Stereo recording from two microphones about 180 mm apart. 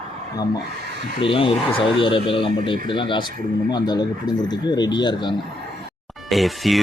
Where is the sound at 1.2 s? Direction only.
30° left (ahead or behind).